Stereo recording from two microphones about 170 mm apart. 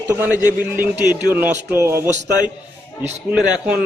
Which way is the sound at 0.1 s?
10° right (ahead or behind).